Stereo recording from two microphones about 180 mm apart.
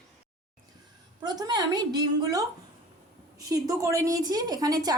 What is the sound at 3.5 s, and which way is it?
A woman's voice, 20° right (ahead or behind).